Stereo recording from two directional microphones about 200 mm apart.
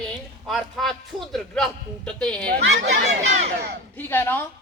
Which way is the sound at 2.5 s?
65° right (ahead or behind).